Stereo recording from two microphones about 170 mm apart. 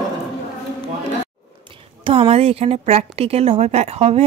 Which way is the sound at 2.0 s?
35° right (ahead or behind).